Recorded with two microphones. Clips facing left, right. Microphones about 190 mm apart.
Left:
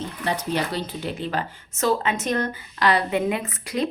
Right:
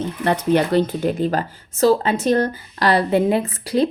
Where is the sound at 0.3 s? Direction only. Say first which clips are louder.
Right 8 dB; 55° right (ahead or behind).